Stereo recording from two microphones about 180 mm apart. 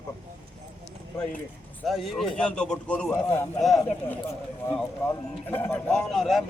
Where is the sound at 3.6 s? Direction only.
Centre (ahead or behind).